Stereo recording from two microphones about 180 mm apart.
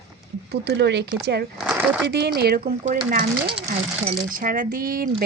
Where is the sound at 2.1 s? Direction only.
70° right (ahead or behind).